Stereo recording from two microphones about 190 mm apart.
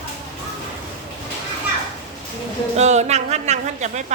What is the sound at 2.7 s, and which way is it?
Speech, 35° right (ahead or behind).